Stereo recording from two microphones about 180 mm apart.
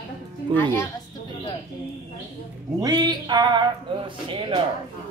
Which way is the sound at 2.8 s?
20° right (ahead or behind).